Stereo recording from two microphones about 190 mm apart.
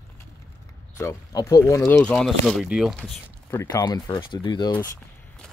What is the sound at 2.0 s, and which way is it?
Speech, 5° left (ahead or behind).